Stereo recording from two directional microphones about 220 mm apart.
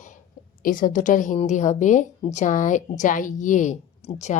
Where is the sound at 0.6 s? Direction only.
40° left (ahead or behind).